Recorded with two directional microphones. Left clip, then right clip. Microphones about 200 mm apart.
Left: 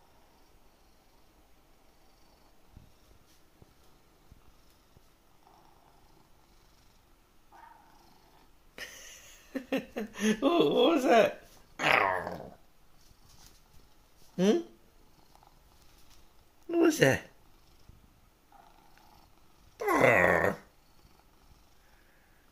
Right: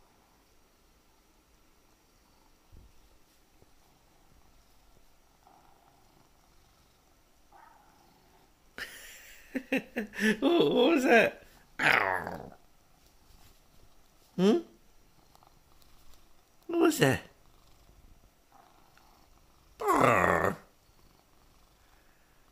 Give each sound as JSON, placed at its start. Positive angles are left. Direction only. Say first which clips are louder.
{"t": 8.7, "sound": "laughter", "louder": "right 2 dB", "side_deg": -30}
{"t": 11.7, "sound": "dog", "louder": "even", "side_deg": -25}
{"t": 14.3, "sound": "speech", "louder": "right 1 dB", "side_deg": -30}
{"t": 16.6, "sound": "a sound", "louder": "left 1 dB", "side_deg": -20}
{"t": 19.8, "sound": "grunt", "louder": "left 1 dB", "side_deg": -20}